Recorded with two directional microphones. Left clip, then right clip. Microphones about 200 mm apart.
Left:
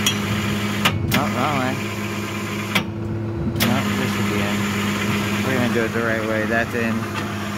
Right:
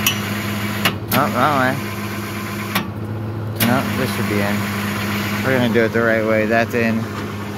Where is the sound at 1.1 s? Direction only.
25° right (ahead or behind).